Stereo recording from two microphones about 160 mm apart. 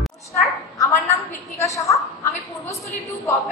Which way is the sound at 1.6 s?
20° left (ahead or behind).